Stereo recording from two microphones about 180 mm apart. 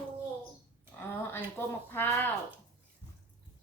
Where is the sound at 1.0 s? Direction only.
10° left (ahead or behind).